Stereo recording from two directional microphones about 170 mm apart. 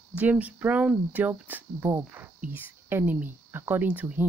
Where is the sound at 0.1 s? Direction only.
10° right (ahead or behind).